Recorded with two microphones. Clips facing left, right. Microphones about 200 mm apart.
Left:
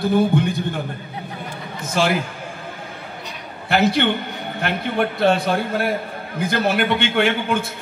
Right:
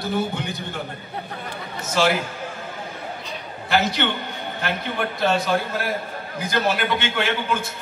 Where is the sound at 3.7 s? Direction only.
55° left (ahead or behind).